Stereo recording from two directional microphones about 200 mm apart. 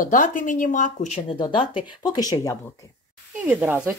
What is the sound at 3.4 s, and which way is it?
Speech, 10° right (ahead or behind).